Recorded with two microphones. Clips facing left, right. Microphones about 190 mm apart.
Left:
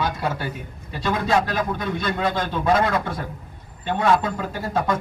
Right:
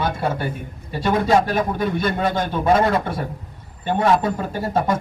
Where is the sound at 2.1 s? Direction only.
45° right (ahead or behind).